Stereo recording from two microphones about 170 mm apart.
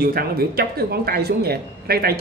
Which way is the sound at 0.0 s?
60° right (ahead or behind).